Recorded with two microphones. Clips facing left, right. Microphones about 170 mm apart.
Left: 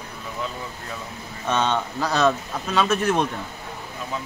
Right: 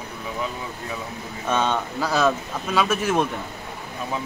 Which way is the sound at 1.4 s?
10° right (ahead or behind).